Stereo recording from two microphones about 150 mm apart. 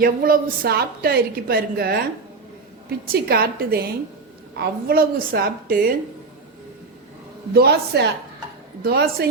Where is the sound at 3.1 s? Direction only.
90° right.